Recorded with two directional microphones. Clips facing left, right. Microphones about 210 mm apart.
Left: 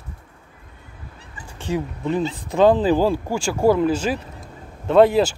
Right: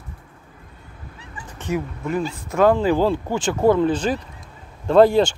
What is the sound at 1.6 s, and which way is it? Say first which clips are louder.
Speech: left 1 dB; 30° left (ahead or behind).